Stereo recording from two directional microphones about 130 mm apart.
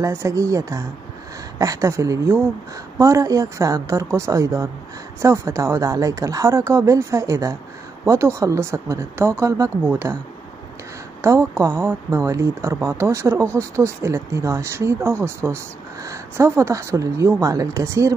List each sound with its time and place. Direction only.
0.0 s speech: 25° right (ahead or behind)
11.1 s speech: 25° right (ahead or behind)